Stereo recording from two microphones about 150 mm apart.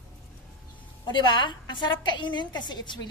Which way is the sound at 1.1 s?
30° left (ahead or behind).